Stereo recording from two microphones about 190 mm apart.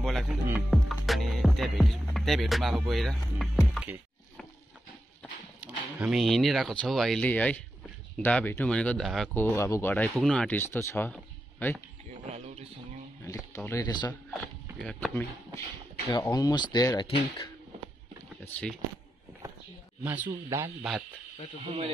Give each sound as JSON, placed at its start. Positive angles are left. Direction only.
{"t": 0.0, "sound": "music", "side_deg": 0}
{"t": 2.9, "sound": "speech", "side_deg": 0}
{"t": 5.6, "sound": "a sound", "side_deg": -5}
{"t": 5.9, "sound": "speech", "side_deg": -5}
{"t": 9.3, "sound": "speech", "side_deg": 15}
{"t": 12.1, "sound": "a sound", "side_deg": -35}
{"t": 13.5, "sound": "speech", "side_deg": 15}
{"t": 14.8, "sound": "speech", "side_deg": 5}
{"t": 16.1, "sound": "speech", "side_deg": 20}
{"t": 18.4, "sound": "speech", "side_deg": 5}
{"t": 20.0, "sound": "speech", "side_deg": -10}
{"t": 21.6, "sound": "speech", "side_deg": -30}